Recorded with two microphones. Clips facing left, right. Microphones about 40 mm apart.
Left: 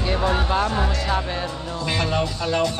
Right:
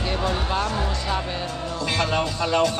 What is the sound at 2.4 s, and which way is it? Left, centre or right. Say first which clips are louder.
Speech: right 1 dB; centre.